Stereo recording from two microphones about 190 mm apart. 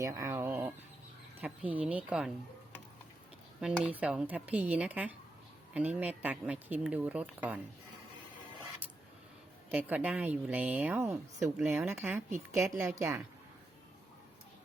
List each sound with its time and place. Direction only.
0.0 s speech: 15° right (ahead or behind)
3.6 s speech: 5° right (ahead or behind)
9.6 s speech: 10° right (ahead or behind)